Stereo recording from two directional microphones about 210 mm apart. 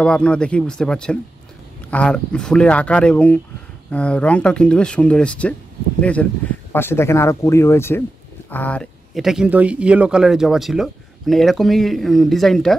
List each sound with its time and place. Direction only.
0.0 s speech: 5° left (ahead or behind)